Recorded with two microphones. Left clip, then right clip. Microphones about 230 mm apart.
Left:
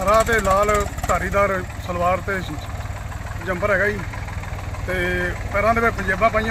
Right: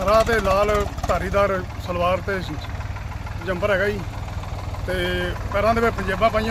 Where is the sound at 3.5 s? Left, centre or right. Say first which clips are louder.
Left 1 dB; centre.